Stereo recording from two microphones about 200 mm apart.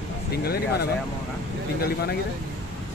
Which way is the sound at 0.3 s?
55° left (ahead or behind).